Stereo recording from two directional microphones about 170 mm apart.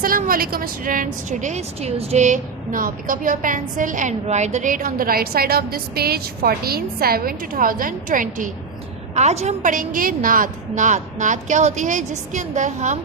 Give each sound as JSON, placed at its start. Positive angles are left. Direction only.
{"t": 0.0, "sound": "a woman's voice", "side_deg": -55}
{"t": 9.1, "sound": "a woman's voice", "side_deg": -40}